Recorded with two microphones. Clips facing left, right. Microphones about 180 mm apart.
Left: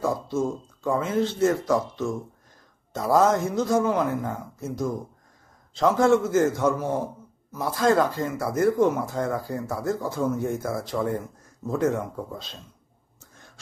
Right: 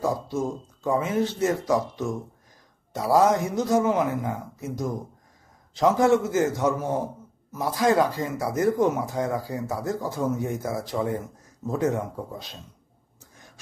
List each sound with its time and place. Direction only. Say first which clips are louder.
0.0 s speech: left 1 dB; 15° right (ahead or behind)